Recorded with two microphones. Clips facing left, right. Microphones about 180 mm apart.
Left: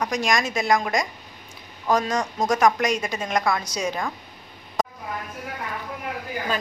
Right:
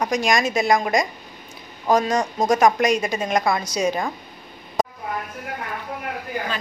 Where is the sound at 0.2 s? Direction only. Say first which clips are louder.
Right 3 dB; 15° right (ahead or behind).